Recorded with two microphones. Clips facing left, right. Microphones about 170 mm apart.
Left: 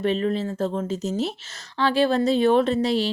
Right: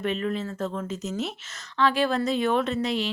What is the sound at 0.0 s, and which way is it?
Speech, 30° left (ahead or behind).